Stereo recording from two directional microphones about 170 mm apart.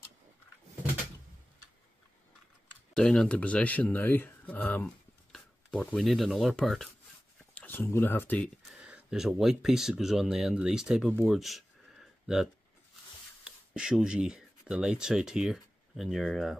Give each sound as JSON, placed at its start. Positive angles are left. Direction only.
{"t": 2.9, "sound": "speech", "side_deg": 5}
{"t": 7.5, "sound": "speech", "side_deg": 10}
{"t": 8.7, "sound": "speech", "side_deg": -5}